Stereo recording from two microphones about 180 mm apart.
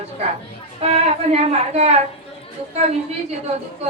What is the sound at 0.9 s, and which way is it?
A woman's voice, 35° right (ahead or behind).